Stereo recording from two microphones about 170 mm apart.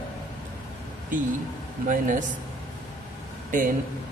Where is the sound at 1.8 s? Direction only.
50° right (ahead or behind).